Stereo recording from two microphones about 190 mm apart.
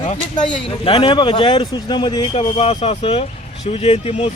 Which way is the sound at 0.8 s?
25° left (ahead or behind).